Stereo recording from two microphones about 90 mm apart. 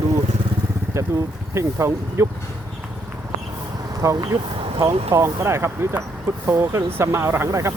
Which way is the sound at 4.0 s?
35° right (ahead or behind).